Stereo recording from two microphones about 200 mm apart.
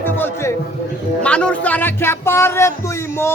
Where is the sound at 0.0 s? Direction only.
10° left (ahead or behind).